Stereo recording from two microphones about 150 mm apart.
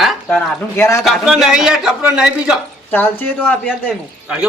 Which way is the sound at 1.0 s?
Centre (ahead or behind).